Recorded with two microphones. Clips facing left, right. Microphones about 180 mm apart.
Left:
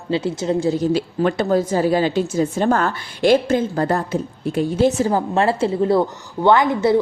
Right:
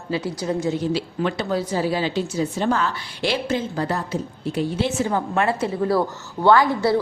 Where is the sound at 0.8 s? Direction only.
45° left (ahead or behind).